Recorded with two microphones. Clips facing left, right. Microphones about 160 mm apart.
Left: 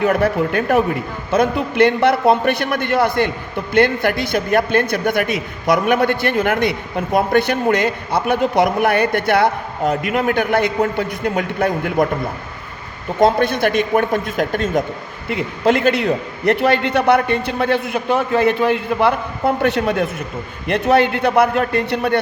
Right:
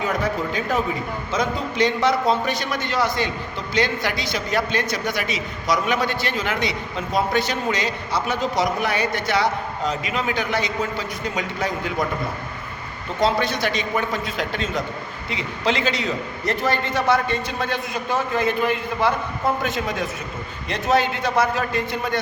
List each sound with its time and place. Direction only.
0.0 s a man's voice: 60° left (ahead or behind)
13.1 s a man's voice: 55° left (ahead or behind); by 22.2 s 70° left (ahead or behind)